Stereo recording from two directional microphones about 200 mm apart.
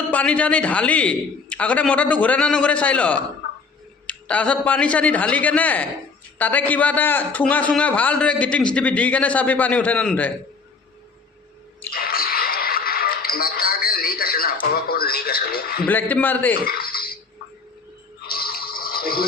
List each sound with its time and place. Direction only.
0.1 s a man's voice: 5° left (ahead or behind)
11.9 s music: 50° left (ahead or behind)
15.9 s a man's voice: 10° left (ahead or behind)
16.6 s a sound: 50° left (ahead or behind)
18.2 s television: 50° left (ahead or behind)